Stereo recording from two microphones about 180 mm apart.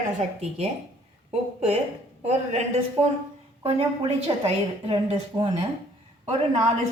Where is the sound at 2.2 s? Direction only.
35° right (ahead or behind).